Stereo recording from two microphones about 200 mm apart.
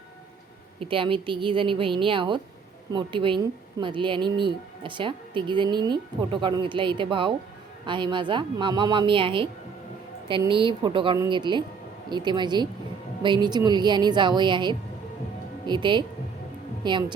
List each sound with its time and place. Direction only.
0.8 s a woman's voice: 25° right (ahead or behind)
10.5 s a woman's voice: 25° right (ahead or behind)